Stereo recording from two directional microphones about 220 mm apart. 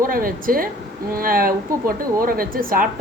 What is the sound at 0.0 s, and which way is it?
A woman's voice, 40° right (ahead or behind).